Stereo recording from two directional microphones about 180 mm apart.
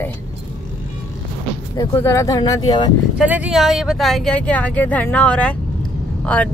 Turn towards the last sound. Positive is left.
turn(degrees=10)  # may be behind; listen again after turning